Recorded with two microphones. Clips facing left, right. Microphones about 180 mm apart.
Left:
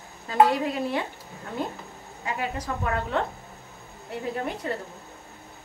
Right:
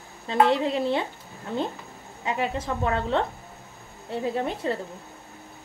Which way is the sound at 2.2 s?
25° right (ahead or behind).